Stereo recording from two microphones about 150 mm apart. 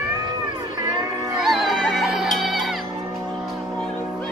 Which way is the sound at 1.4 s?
Centre (ahead or behind).